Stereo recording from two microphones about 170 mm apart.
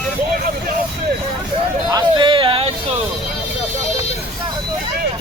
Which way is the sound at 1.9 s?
25° right (ahead or behind).